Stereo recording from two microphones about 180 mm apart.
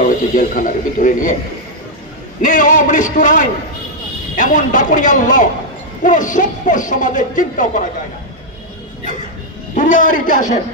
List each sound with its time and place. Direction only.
0.0 s speech: 50° left (ahead or behind)
2.4 s speech: 50° left (ahead or behind)
9.8 s speech: 45° left (ahead or behind)